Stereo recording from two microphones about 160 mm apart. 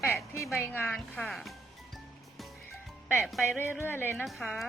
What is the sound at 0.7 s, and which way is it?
Speech, 10° left (ahead or behind).